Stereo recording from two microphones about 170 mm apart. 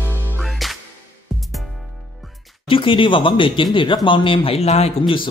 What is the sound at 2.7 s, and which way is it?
Speech, 30° left (ahead or behind).